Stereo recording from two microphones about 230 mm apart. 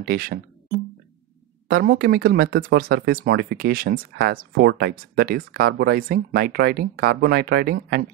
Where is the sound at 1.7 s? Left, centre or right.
Right.